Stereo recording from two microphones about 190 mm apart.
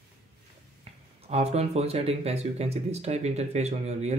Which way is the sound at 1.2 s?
35° right (ahead or behind).